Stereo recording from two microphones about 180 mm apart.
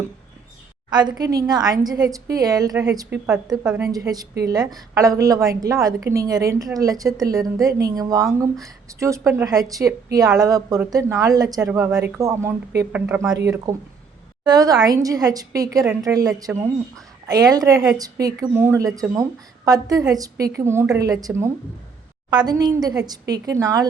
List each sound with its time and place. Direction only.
0.9 s a woman's voice: 25° right (ahead or behind)
3.2 s a woman's voice: 5° right (ahead or behind)
3.8 s a woman's voice: 20° right (ahead or behind)
13.7 s a woman's voice: 20° right (ahead or behind)